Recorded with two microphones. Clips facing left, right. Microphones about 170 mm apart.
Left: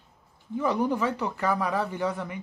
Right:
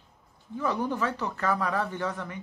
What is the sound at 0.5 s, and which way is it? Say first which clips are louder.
Speech: left 3 dB; 10° left (ahead or behind).